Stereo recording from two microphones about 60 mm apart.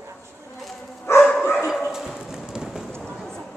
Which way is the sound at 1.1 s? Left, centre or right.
Left.